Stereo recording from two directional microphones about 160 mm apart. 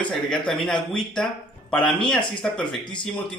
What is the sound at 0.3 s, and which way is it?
Speech, 5° left (ahead or behind).